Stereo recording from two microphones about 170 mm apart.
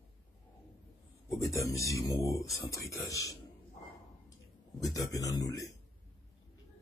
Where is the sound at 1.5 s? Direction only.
20° left (ahead or behind).